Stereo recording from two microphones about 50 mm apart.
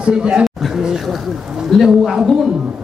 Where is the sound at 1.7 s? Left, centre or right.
Centre.